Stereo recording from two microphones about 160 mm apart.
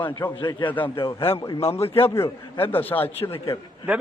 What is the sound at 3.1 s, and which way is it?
Speech, 35° left (ahead or behind).